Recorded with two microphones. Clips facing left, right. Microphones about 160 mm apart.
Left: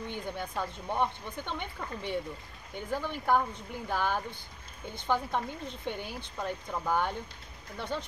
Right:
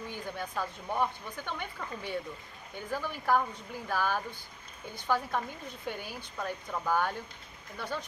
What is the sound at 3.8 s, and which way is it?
Speech, 20° left (ahead or behind).